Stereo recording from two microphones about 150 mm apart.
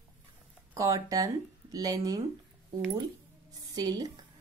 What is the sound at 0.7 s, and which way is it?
Speech, 20° right (ahead or behind).